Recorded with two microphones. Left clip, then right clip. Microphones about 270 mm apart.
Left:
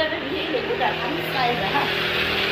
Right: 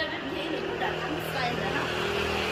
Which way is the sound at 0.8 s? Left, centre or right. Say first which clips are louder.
Left 7 dB; right.